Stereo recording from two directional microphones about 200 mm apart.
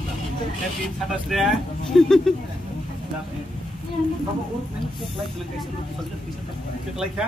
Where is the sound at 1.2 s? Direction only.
Centre (ahead or behind).